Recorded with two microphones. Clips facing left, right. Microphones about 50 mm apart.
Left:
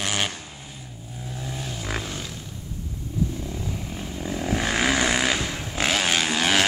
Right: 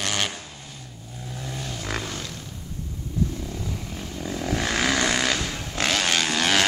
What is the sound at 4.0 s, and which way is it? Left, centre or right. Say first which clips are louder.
Vehicle: left 1 dB; centre.